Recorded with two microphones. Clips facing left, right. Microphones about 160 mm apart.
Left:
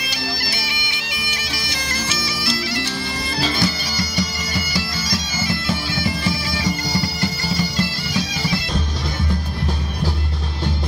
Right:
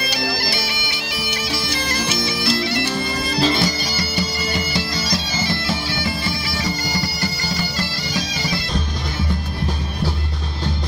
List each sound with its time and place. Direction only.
2.0 s bagpipes: 60° right (ahead or behind)
3.3 s bagpipes: 40° right (ahead or behind)